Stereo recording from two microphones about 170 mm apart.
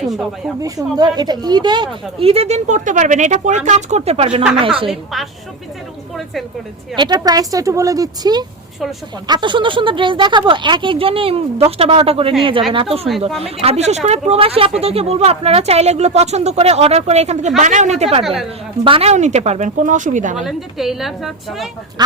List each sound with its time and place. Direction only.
0.1 s a woman's voice: centre (ahead or behind)
0.6 s speech: 25° right (ahead or behind)
4.9 s a woman's voice: centre (ahead or behind)
6.9 s a woman's voice: 25° right (ahead or behind); by 20.4 s 50° right (ahead or behind)
20.4 s a woman's voice: centre (ahead or behind)